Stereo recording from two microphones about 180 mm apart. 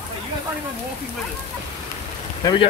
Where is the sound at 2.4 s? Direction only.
25° left (ahead or behind).